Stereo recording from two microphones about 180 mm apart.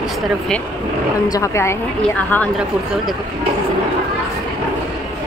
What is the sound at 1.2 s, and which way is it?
Speech, 20° left (ahead or behind).